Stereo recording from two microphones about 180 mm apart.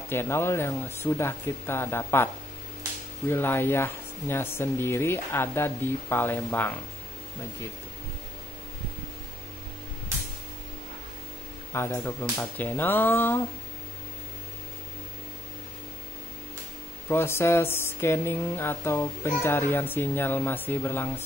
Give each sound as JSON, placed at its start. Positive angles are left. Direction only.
{"t": 0.1, "sound": "speech", "side_deg": 15}
{"t": 3.3, "sound": "speech", "side_deg": 10}
{"t": 11.7, "sound": "speech", "side_deg": 15}
{"t": 17.1, "sound": "speech", "side_deg": 15}